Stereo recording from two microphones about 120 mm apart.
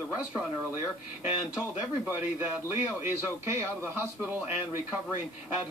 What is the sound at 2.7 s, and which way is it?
Speech, 20° right (ahead or behind).